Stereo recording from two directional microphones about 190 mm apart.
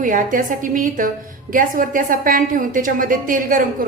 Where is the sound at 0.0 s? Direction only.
45° right (ahead or behind).